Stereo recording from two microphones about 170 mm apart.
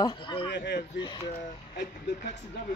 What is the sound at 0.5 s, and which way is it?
Speech, 85° left.